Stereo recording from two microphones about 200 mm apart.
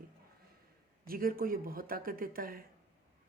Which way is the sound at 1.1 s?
45° right (ahead or behind).